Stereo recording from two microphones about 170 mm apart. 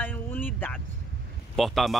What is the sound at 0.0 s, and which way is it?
Vehicle, 10° left (ahead or behind).